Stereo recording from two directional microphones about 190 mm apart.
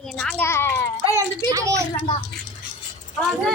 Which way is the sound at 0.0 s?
5° left (ahead or behind).